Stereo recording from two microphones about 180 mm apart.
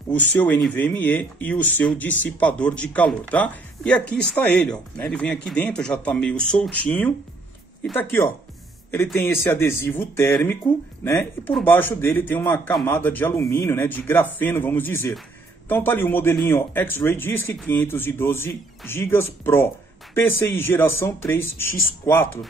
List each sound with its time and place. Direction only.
0.1 s speech: 10° left (ahead or behind)